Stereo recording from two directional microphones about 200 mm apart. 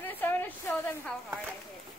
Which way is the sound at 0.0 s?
10° left (ahead or behind).